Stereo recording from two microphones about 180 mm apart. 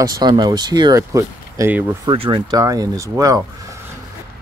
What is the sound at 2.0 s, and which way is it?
Speech, 30° right (ahead or behind).